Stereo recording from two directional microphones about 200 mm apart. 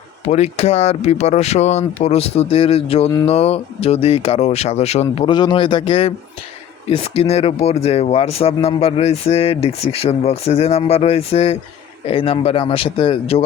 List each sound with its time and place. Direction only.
0.3 s speech: 35° left (ahead or behind)